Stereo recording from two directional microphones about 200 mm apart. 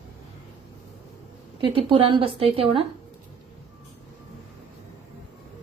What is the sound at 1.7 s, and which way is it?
A woman's voice, 25° right (ahead or behind).